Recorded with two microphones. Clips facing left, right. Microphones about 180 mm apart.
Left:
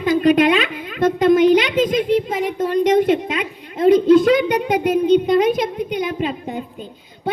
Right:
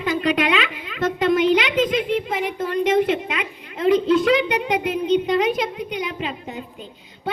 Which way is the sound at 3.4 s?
45° left (ahead or behind).